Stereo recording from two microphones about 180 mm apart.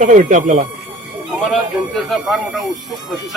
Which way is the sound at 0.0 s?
45° right (ahead or behind).